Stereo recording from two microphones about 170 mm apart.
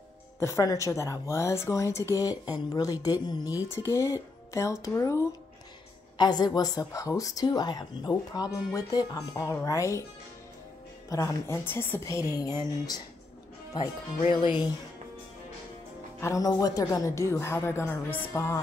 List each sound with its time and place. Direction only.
0.4 s a woman's voice: 15° left (ahead or behind)
11.1 s a woman's voice: 15° left (ahead or behind)
14.3 s a woman's voice: 30° left (ahead or behind)
16.2 s a woman's voice: 20° left (ahead or behind)